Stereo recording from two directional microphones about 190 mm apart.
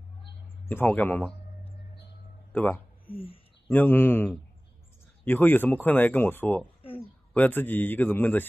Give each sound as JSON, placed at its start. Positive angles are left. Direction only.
{"t": 0.7, "sound": "speech", "side_deg": 10}
{"t": 2.5, "sound": "speech", "side_deg": 10}
{"t": 3.1, "sound": "speech", "side_deg": 30}
{"t": 3.6, "sound": "speech", "side_deg": 10}